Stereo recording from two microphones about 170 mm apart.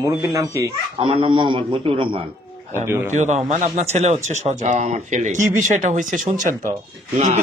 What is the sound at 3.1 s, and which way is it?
Speech, 45° right (ahead or behind).